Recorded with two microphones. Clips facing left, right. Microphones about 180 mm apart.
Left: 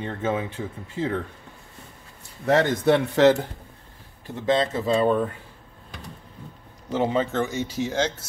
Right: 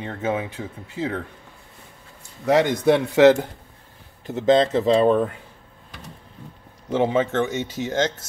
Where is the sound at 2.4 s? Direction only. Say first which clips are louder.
Right 2 dB; 10° right (ahead or behind).